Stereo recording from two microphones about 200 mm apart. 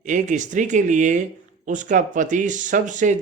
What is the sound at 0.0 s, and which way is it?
Speech, 40° right (ahead or behind).